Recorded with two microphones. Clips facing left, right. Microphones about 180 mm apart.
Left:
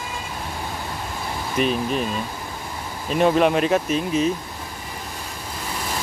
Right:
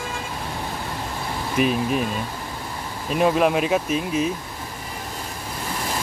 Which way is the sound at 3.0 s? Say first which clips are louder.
Left 1 dB; centre (ahead or behind).